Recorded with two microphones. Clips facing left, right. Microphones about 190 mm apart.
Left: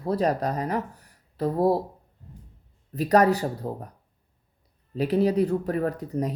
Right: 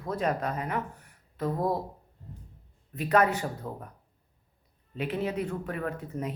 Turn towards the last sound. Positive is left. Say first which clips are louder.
# left 6 dB
turn(degrees=35)  # may be behind; listen again after turning